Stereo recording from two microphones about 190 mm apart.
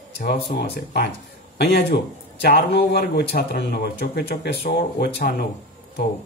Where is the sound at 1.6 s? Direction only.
60° left (ahead or behind).